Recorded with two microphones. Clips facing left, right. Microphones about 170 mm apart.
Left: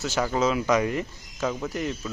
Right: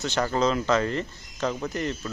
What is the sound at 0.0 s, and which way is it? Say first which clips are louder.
A man's voice: even; 5° left (ahead or behind).